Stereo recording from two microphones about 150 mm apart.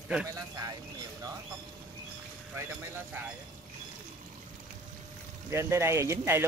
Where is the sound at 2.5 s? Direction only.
15° right (ahead or behind).